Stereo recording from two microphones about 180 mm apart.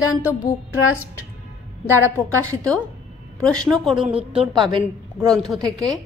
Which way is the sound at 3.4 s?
5° left (ahead or behind).